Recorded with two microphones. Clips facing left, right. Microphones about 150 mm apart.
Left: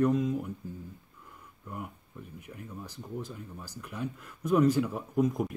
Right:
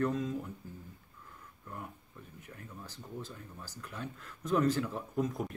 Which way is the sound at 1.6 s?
15° left (ahead or behind).